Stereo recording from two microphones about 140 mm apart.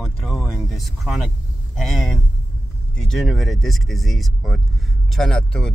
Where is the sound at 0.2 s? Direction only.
Centre (ahead or behind).